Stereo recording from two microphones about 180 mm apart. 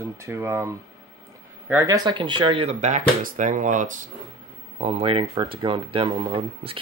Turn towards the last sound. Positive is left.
turn(degrees=-30)  # may be behind; listen again after turning